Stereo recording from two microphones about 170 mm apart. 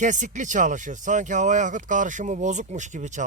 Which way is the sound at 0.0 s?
45° right (ahead or behind).